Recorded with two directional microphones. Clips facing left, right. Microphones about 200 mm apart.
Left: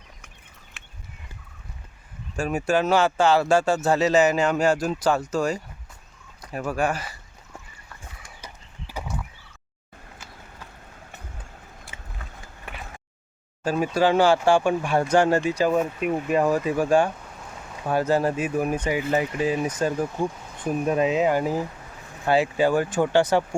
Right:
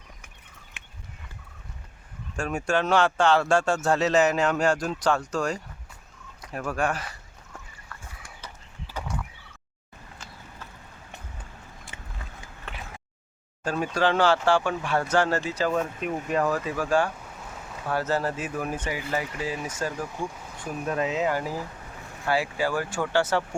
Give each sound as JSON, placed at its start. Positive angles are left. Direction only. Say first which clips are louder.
{"t": 2.3, "sound": "speech", "louder": "left 3 dB", "side_deg": 5}
{"t": 8.9, "sound": "frog", "louder": "left 1 dB", "side_deg": 10}
{"t": 13.7, "sound": "speech", "louder": "left 4 dB", "side_deg": 10}
{"t": 17.2, "sound": "rain", "louder": "even", "side_deg": 0}
{"t": 17.8, "sound": "speech", "louder": "left 5 dB", "side_deg": 15}
{"t": 20.3, "sound": "a sound", "louder": "even", "side_deg": 0}
{"t": 20.6, "sound": "speech", "louder": "left 6 dB", "side_deg": 20}